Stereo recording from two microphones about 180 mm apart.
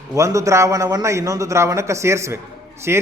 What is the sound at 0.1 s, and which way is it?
A man's voice, 15° right (ahead or behind).